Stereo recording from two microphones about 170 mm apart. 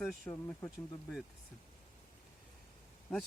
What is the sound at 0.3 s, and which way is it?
Speech, 10° left (ahead or behind).